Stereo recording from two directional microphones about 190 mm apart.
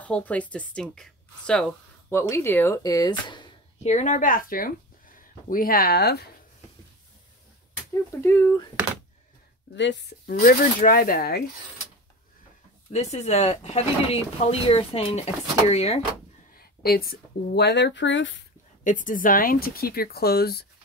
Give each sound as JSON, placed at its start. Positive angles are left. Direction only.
{"t": 0.0, "sound": "speech", "side_deg": 5}
{"t": 3.8, "sound": "speech", "side_deg": 40}
{"t": 8.1, "sound": "speech", "side_deg": 15}
{"t": 9.8, "sound": "speech", "side_deg": 65}
{"t": 12.9, "sound": "speech", "side_deg": 35}
{"t": 16.5, "sound": "speech", "side_deg": 50}
{"t": 18.9, "sound": "speech", "side_deg": 45}